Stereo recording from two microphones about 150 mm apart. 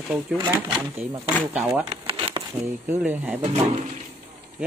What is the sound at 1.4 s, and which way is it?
Speech, 10° right (ahead or behind).